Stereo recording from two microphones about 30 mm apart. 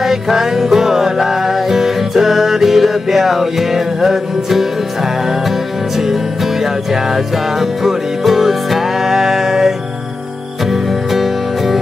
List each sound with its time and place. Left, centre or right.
0.0 s music: centre